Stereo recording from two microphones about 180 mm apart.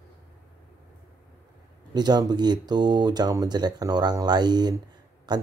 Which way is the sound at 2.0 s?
25° right (ahead or behind).